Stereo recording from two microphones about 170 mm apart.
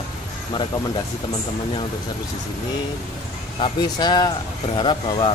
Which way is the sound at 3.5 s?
30° left (ahead or behind).